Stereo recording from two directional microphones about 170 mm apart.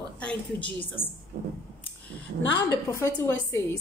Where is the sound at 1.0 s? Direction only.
30° left (ahead or behind).